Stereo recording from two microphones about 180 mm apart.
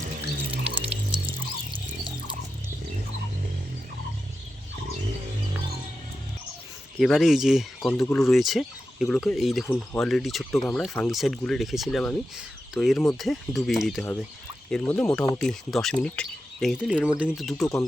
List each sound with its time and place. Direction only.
0.5 s a sound: 35° right (ahead or behind)
7.0 s speech: centre (ahead or behind)
15.1 s speech: 15° left (ahead or behind)
15.4 s speech: centre (ahead or behind)